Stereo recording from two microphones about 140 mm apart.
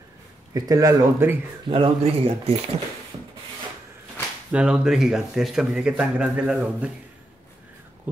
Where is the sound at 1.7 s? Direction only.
40° right (ahead or behind).